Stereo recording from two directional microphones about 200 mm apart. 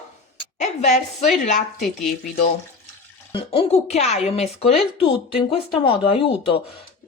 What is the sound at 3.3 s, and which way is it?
Speech, 25° left (ahead or behind).